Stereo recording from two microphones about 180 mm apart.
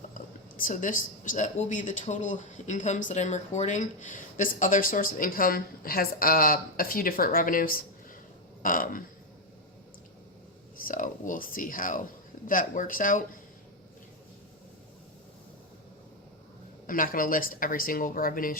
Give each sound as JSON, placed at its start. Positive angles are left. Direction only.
{"t": 0.1, "sound": "speech", "side_deg": 50}
{"t": 10.8, "sound": "speech", "side_deg": 50}
{"t": 16.8, "sound": "speech", "side_deg": 50}